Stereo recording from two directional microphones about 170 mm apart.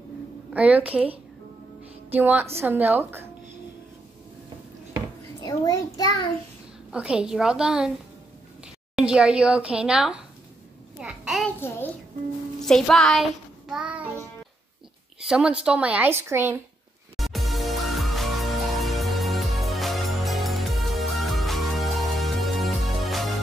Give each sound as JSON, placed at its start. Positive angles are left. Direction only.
{"t": 0.5, "sound": "a woman's voice", "side_deg": -10}
{"t": 2.1, "sound": "a woman's voice", "side_deg": -10}
{"t": 5.4, "sound": "a child's voice", "side_deg": 25}
{"t": 6.9, "sound": "a woman's voice", "side_deg": -5}
{"t": 8.9, "sound": "a woman's voice", "side_deg": -5}
{"t": 11.0, "sound": "a sound", "side_deg": -5}
{"t": 11.6, "sound": "a child's voice", "side_deg": 15}
{"t": 12.6, "sound": "child singing", "side_deg": 5}
{"t": 15.2, "sound": "a woman's voice", "side_deg": -5}
{"t": 17.2, "sound": "music", "side_deg": 0}